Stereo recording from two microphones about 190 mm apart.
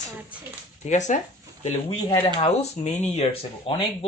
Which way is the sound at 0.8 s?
40° left (ahead or behind).